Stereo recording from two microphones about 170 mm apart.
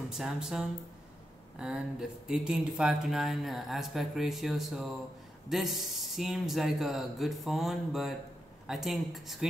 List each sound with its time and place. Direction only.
0.1 s speech: 5° right (ahead or behind)